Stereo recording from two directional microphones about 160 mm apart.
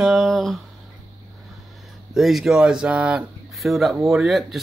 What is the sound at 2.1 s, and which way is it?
Speech, centre (ahead or behind).